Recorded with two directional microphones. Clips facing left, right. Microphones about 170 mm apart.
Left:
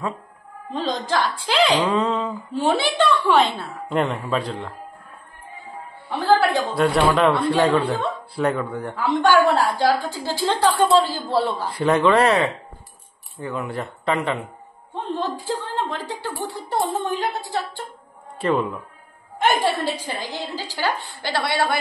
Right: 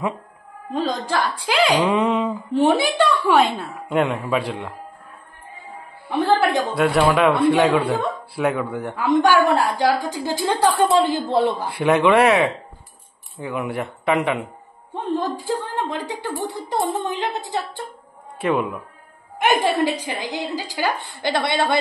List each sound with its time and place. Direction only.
0.7 s a woman's voice: 10° right (ahead or behind)
6.0 s a woman's voice: 20° right (ahead or behind)
6.6 s a man's voice: centre (ahead or behind)
8.9 s a woman's voice: 15° right (ahead or behind)